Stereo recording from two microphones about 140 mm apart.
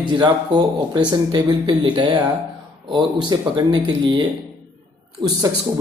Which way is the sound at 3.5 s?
35° right (ahead or behind).